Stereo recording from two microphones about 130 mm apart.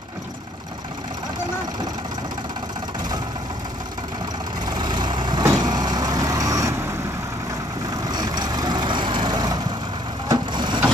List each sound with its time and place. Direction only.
4.6 s vehicle: 35° right (ahead or behind)
8.1 s vehicle: 30° right (ahead or behind)